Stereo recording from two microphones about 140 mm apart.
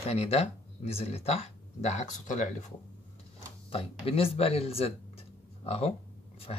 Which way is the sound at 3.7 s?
45° left (ahead or behind).